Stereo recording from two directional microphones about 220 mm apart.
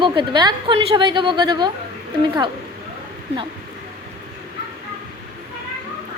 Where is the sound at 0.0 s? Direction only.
20° right (ahead or behind).